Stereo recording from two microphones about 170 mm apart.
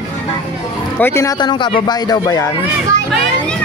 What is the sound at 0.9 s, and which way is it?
Speech, 15° left (ahead or behind).